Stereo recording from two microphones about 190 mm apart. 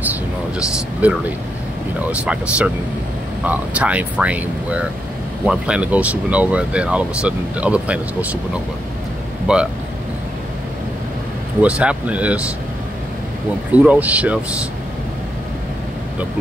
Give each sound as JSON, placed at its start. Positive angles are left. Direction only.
{"t": 0.0, "sound": "a sound", "side_deg": -10}
{"t": 2.0, "sound": "speech", "side_deg": -5}
{"t": 9.5, "sound": "speech", "side_deg": -5}
{"t": 11.6, "sound": "speech", "side_deg": -5}
{"t": 13.8, "sound": "speech", "side_deg": -5}